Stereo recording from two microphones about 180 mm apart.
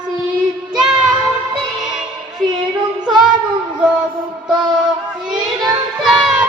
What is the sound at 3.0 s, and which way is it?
Child singing, 5° right (ahead or behind).